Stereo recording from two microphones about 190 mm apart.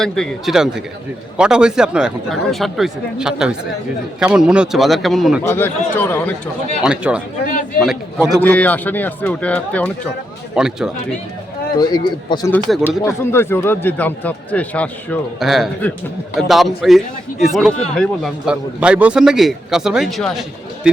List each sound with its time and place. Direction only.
0.0 s a man's voice: centre (ahead or behind)
5.4 s speech: 10° left (ahead or behind)
6.8 s a man's voice: 5° right (ahead or behind)
8.4 s speech: 10° left (ahead or behind)
10.5 s a man's voice: 5° right (ahead or behind)
11.8 s a man's voice: 20° left (ahead or behind); by 20.4 s centre (ahead or behind)